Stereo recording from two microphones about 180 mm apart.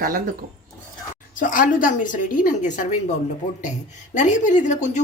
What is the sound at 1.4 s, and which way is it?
A woman's voice, 50° left (ahead or behind).